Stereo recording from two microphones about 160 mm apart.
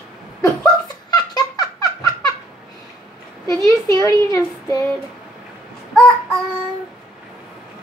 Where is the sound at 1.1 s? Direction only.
25° left (ahead or behind).